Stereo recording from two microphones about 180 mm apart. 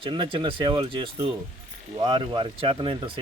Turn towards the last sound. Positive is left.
turn(degrees=-30)  # may be behind; listen again after turning